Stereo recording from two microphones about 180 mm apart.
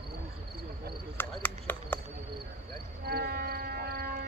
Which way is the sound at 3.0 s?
60° right (ahead or behind).